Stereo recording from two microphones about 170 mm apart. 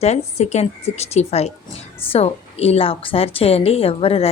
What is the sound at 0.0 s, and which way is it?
A woman's voice, 40° left (ahead or behind).